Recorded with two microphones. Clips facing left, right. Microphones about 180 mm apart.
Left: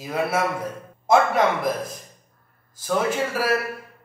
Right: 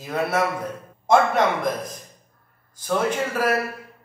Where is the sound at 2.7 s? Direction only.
Centre (ahead or behind).